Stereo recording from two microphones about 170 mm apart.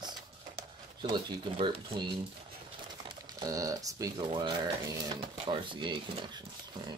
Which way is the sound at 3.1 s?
20° right (ahead or behind).